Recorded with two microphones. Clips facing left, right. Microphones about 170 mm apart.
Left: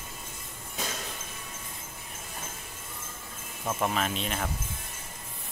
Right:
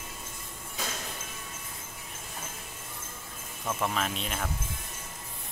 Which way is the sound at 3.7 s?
15° left (ahead or behind).